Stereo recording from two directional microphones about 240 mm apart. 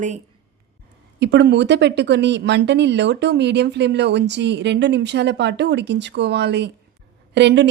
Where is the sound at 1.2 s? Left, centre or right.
Right.